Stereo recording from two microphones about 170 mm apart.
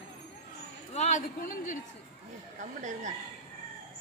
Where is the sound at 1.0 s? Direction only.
45° left (ahead or behind).